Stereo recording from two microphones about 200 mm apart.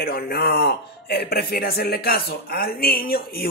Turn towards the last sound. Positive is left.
turn(degrees=50)  # may be behind; listen again after turning